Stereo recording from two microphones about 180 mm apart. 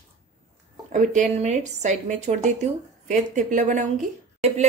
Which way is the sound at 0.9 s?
45° right (ahead or behind).